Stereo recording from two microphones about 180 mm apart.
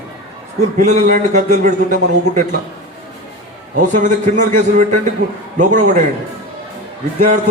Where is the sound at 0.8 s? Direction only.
45° right (ahead or behind).